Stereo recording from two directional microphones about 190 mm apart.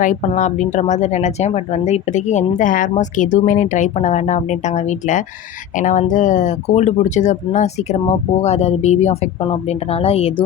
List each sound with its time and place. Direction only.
0.0 s speech: 40° left (ahead or behind)